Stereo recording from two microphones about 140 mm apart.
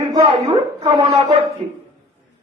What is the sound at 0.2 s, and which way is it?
Speech, 40° right (ahead or behind).